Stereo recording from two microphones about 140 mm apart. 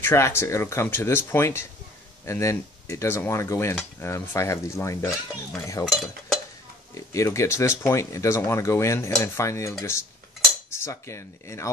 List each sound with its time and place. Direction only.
0.0 s speech: 20° left (ahead or behind)
5.9 s speech: centre (ahead or behind)
6.9 s speech: 20° left (ahead or behind)